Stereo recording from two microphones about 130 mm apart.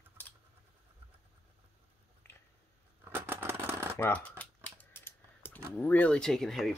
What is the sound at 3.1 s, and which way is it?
Shuffling cards, 15° right (ahead or behind).